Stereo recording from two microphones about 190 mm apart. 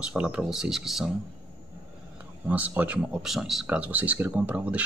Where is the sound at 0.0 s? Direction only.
5° right (ahead or behind).